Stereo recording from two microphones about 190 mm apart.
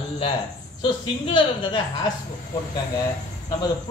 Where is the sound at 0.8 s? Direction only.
25° left (ahead or behind).